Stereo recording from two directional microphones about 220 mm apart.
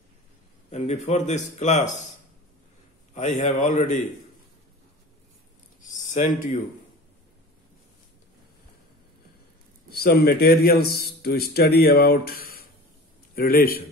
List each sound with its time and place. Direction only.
0.7 s a man's voice: 30° left (ahead or behind)
3.2 s a man's voice: 30° left (ahead or behind)
6.1 s a man's voice: 35° left (ahead or behind)
9.8 s a man's voice: 45° left (ahead or behind)